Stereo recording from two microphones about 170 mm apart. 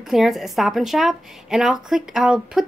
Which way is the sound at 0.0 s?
Centre (ahead or behind).